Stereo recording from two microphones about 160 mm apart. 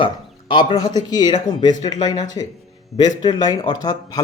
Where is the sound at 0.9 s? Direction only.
25° left (ahead or behind).